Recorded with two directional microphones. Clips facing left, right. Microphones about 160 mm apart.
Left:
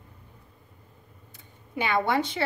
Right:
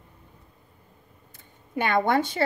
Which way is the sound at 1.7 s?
50° right (ahead or behind).